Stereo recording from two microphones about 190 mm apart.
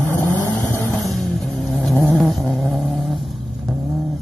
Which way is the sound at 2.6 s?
Centre (ahead or behind).